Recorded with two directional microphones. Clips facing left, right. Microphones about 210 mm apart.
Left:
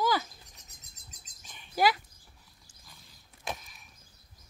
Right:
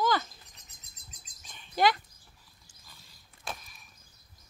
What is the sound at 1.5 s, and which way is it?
Bird, 10° left (ahead or behind).